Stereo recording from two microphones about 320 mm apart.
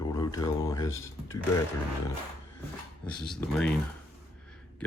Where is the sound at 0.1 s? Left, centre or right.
Centre.